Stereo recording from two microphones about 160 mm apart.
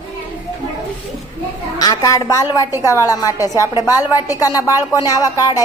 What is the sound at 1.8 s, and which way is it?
A woman's voice, 25° left (ahead or behind).